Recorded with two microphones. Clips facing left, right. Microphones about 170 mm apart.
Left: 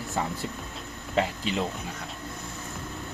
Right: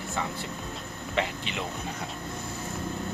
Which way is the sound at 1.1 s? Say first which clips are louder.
Left 3 dB; 40° left (ahead or behind).